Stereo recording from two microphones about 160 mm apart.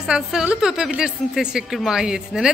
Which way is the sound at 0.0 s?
5° right (ahead or behind).